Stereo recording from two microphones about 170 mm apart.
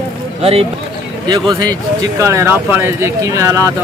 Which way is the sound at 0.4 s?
35° right (ahead or behind).